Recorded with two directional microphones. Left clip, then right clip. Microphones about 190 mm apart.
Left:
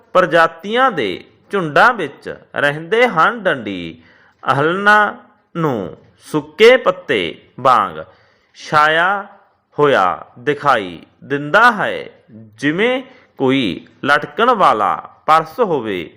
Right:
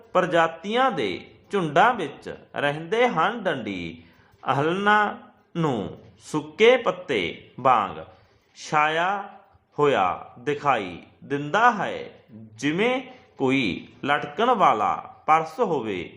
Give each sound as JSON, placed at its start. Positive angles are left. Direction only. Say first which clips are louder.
{"t": 0.1, "sound": "a man's voice", "louder": "left 9 dB", "side_deg": 15}
{"t": 5.5, "sound": "a man's voice", "louder": "left 7 dB", "side_deg": 10}